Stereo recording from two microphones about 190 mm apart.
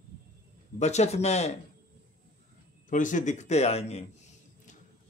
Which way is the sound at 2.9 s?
40° left (ahead or behind).